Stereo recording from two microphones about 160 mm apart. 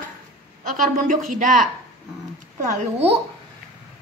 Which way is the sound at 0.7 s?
55° right (ahead or behind).